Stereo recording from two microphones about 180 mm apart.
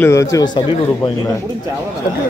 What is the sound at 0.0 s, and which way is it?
A man's voice, 15° left (ahead or behind).